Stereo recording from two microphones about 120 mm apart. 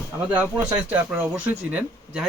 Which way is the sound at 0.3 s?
10° right (ahead or behind).